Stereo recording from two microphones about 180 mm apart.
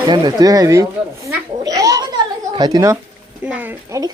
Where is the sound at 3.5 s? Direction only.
10° right (ahead or behind).